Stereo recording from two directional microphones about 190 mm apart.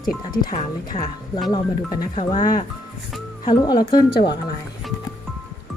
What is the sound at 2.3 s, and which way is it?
Speech, 25° left (ahead or behind).